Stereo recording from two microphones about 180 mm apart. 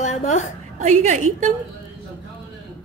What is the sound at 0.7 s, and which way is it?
Speech, 40° right (ahead or behind).